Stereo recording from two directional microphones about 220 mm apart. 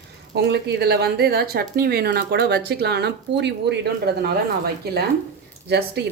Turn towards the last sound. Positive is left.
turn(degrees=-50)  # may be behind; listen again after turning